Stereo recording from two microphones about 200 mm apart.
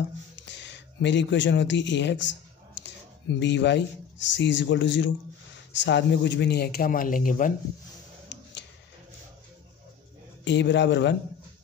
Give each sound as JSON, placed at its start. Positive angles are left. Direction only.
{"t": 0.5, "sound": "speech", "side_deg": 60}
{"t": 3.3, "sound": "speech", "side_deg": 60}
{"t": 8.3, "sound": "a sound", "side_deg": 65}
{"t": 10.4, "sound": "speech", "side_deg": 60}